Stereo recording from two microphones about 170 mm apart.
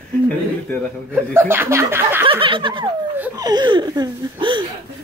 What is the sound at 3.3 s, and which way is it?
Speech, 25° right (ahead or behind).